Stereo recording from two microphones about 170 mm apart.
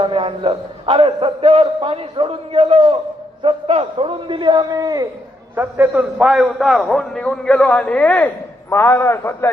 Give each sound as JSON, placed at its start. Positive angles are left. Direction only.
{"t": 0.0, "sound": "a man's voice", "side_deg": -30}
{"t": 5.5, "sound": "a man's voice", "side_deg": -10}